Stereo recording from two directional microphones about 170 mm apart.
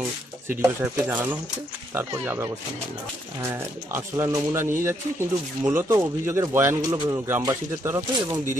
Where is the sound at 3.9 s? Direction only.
20° right (ahead or behind).